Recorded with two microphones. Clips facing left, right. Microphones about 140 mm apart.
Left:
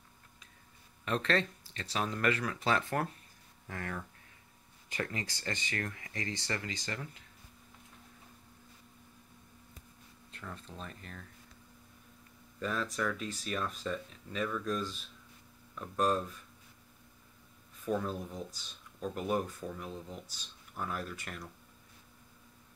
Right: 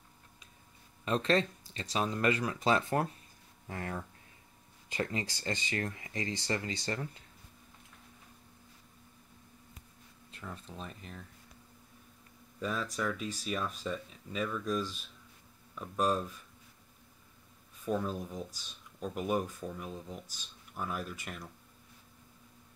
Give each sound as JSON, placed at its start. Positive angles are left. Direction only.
{"t": 1.0, "sound": "speech", "side_deg": -20}
{"t": 10.4, "sound": "speech", "side_deg": -10}
{"t": 12.5, "sound": "speech", "side_deg": -5}
{"t": 17.8, "sound": "speech", "side_deg": -5}